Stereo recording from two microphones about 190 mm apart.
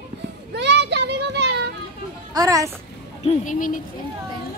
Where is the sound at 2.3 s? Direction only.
15° right (ahead or behind).